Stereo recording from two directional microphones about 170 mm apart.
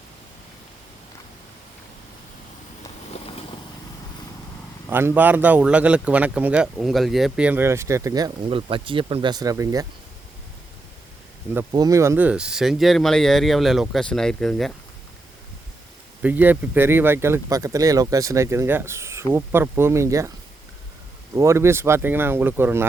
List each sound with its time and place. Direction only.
3.1 s vehicle: 35° left (ahead or behind)
4.9 s speech: 10° right (ahead or behind)
8.4 s speech: 30° right (ahead or behind)
11.7 s speech: 20° right (ahead or behind); by 14.7 s 5° left (ahead or behind)
16.2 s speech: 10° right (ahead or behind)
21.3 s speech: 15° right (ahead or behind)